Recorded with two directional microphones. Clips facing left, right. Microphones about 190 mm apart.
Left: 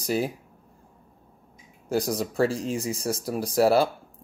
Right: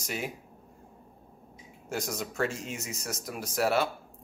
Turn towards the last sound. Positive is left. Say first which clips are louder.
# left 7 dB
turn(degrees=35)  # may be behind; listen again after turning